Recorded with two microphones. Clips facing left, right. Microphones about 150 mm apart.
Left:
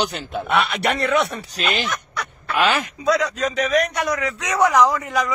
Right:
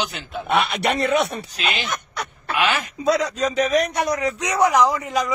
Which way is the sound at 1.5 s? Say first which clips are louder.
Left 3 dB; 40° left (ahead or behind).